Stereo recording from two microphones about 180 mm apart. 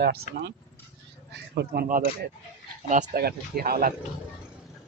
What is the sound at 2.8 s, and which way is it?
Speech, 40° right (ahead or behind).